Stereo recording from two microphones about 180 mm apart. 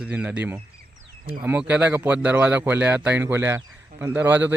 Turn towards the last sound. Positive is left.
turn(degrees=-10)  # may be behind; listen again after turning